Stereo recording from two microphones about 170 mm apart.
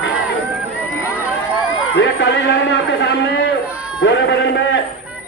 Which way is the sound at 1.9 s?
90° left.